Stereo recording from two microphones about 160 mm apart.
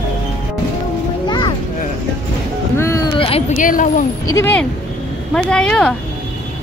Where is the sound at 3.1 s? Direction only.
35° left (ahead or behind).